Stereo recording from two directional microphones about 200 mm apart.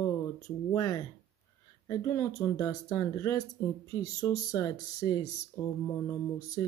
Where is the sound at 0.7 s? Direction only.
15° left (ahead or behind).